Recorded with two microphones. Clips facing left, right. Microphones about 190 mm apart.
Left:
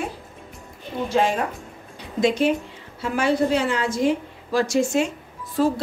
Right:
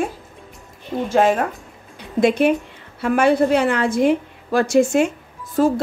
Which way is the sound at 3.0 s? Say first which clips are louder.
Right 5 dB; 55° right (ahead or behind).